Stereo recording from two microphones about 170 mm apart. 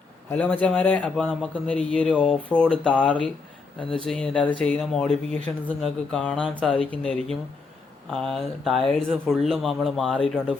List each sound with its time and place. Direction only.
0.3 s a man's voice: 10° left (ahead or behind)